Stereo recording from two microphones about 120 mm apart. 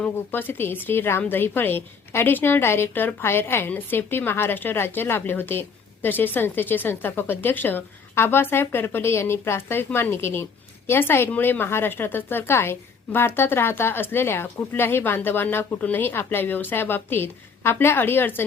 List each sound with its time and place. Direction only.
0.0 s a woman's voice: 15° left (ahead or behind)